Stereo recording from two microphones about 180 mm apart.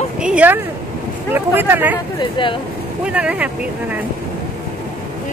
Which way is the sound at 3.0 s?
5° right (ahead or behind).